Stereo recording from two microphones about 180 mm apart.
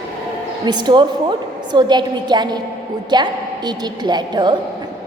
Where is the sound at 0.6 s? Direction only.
25° right (ahead or behind).